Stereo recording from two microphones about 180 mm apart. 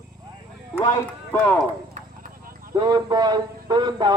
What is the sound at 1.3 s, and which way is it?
Speech, 10° left (ahead or behind).